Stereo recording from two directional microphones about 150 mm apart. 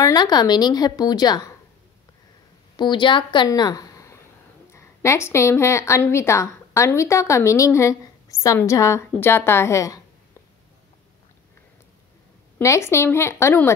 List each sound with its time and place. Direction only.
0.0 s a woman's voice: 25° left (ahead or behind)
2.8 s a woman's voice: 30° left (ahead or behind)
12.5 s speech: 20° left (ahead or behind)